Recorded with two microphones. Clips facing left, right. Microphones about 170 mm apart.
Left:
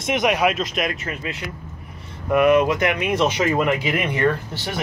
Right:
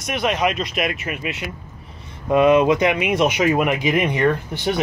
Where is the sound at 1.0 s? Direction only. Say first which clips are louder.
Right 2 dB; 15° right (ahead or behind).